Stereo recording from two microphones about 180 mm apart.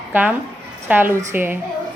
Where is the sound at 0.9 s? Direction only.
10° right (ahead or behind).